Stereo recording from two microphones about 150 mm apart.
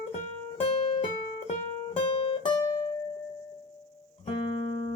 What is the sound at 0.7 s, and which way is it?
Music, 40° left (ahead or behind).